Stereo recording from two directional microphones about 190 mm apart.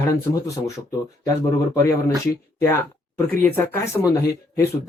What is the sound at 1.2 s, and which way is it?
Speech, 15° left (ahead or behind).